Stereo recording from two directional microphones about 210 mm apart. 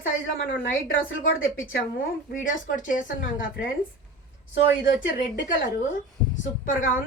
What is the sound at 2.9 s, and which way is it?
Speech, 40° left (ahead or behind).